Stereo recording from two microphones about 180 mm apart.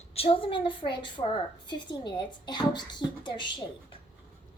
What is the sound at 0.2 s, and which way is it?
A woman's voice, 30° left (ahead or behind).